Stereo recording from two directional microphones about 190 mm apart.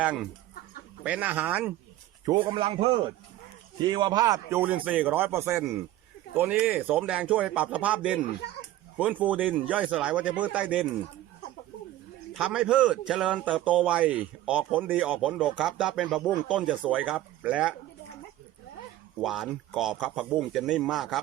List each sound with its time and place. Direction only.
0.0 s a man's voice: 5° right (ahead or behind)
2.2 s a man's voice: 20° right (ahead or behind); by 10.8 s 5° right (ahead or behind)
12.3 s a man's voice: 5° right (ahead or behind)
19.2 s a man's voice: centre (ahead or behind)